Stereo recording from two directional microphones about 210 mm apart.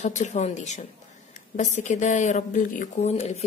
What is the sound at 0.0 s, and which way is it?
Speech, 35° left (ahead or behind).